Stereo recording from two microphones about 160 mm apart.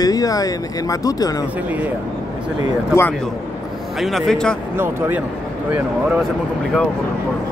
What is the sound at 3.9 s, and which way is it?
Speech, centre (ahead or behind).